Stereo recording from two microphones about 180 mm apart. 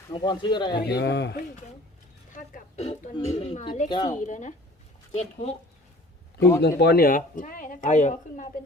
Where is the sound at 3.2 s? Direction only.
35° left (ahead or behind).